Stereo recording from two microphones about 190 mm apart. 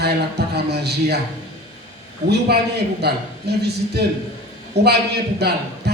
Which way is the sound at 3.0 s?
60° right (ahead or behind).